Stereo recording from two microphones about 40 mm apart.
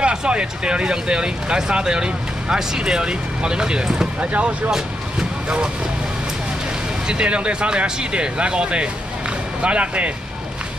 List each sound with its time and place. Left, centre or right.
0.0 s speech: right
4.2 s speech: right
7.1 s speech: right